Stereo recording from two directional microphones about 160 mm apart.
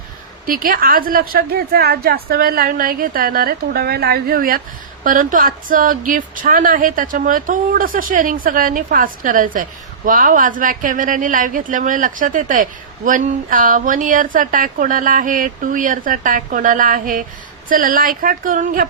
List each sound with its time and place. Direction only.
0.4 s a woman's voice: 60° right (ahead or behind)